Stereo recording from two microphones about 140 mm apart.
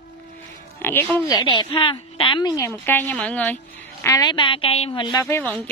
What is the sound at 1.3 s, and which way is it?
A woman's voice, 30° left (ahead or behind).